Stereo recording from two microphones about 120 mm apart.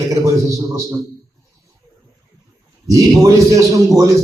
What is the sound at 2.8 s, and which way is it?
A man's voice, 25° right (ahead or behind).